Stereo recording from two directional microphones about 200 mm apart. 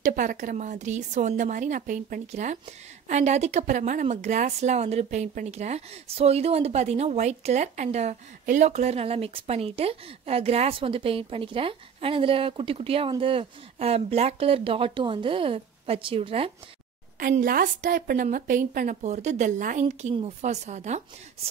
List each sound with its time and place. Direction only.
0.0 s speech: 40° right (ahead or behind)
17.2 s speech: 45° right (ahead or behind)